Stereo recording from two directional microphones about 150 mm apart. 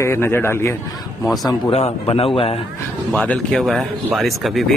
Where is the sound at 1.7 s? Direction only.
40° left (ahead or behind).